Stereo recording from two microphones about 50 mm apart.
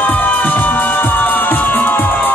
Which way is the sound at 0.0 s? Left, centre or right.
Left.